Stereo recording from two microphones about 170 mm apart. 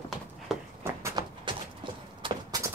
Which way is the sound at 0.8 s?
15° right (ahead or behind).